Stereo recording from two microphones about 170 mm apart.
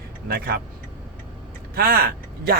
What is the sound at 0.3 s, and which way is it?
Speech, 65° right (ahead or behind).